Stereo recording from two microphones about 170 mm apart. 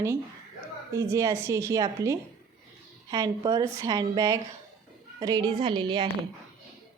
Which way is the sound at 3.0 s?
25° right (ahead or behind).